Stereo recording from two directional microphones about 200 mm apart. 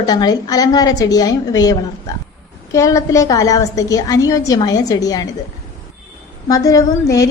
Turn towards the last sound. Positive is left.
turn(degrees=15)  # may be behind; listen again after turning